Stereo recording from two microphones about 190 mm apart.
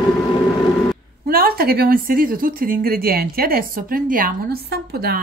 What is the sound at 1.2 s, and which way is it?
Speech, 50° right (ahead or behind).